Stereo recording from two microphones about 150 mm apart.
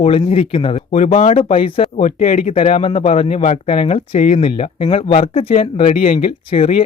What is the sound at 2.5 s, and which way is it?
Speech, 45° left (ahead or behind).